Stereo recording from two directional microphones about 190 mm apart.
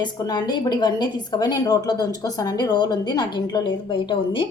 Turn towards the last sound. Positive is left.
turn(degrees=25)  # may be behind; listen again after turning